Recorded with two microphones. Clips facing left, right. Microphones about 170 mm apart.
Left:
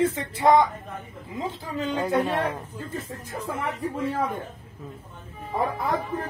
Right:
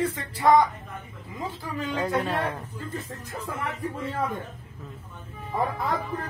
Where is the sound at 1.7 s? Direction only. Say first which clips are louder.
Left 3 dB; 20° left (ahead or behind).